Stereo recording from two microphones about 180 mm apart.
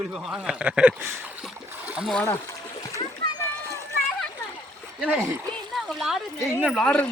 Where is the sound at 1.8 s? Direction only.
5° right (ahead or behind).